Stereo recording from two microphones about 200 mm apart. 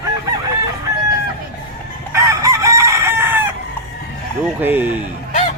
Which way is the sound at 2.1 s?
15° right (ahead or behind).